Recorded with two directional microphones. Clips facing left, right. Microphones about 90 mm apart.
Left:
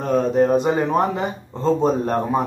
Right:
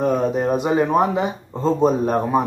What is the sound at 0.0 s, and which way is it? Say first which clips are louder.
Speech: left 1 dB; 10° right (ahead or behind).